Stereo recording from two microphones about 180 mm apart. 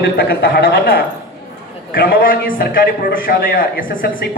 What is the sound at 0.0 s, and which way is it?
A man's voice, 60° left (ahead or behind).